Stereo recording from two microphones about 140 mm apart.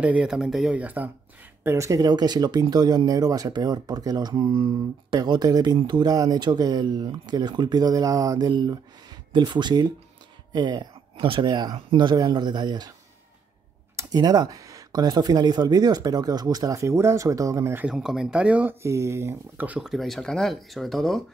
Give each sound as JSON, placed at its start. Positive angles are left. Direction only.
{"t": 0.0, "sound": "speech", "side_deg": -10}
{"t": 13.9, "sound": "speech", "side_deg": -25}
{"t": 17.8, "sound": "speech", "side_deg": -5}